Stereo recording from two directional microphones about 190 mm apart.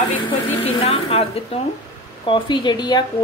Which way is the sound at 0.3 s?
30° left (ahead or behind).